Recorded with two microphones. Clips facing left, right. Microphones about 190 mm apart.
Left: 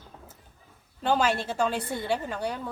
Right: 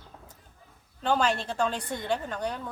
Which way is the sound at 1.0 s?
5° left (ahead or behind).